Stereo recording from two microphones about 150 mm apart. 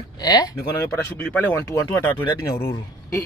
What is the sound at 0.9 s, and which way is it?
Speech, 15° left (ahead or behind).